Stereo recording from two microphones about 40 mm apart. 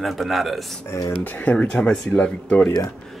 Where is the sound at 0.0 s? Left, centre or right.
Centre.